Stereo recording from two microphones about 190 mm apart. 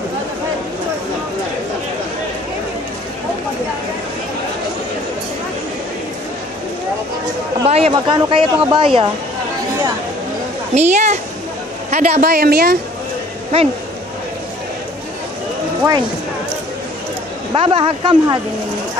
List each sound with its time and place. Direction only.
7.6 s a woman's voice: 30° right (ahead or behind)
10.7 s a woman's voice: 35° right (ahead or behind)
12.2 s a woman's voice: 55° right (ahead or behind)
17.6 s a woman's voice: 25° right (ahead or behind)